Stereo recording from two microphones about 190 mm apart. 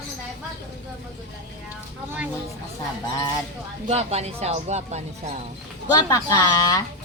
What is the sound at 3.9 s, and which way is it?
Speech, 35° right (ahead or behind).